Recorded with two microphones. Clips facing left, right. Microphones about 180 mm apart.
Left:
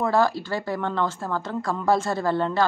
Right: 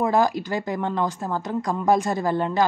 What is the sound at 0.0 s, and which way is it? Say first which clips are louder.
Speech: right 1 dB; 15° right (ahead or behind).